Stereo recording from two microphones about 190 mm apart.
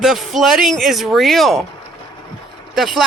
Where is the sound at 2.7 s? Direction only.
Centre (ahead or behind).